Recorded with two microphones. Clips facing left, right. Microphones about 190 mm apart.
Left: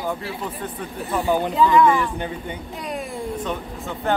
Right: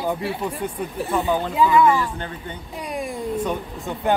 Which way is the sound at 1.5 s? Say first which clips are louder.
Even; 5° right (ahead or behind).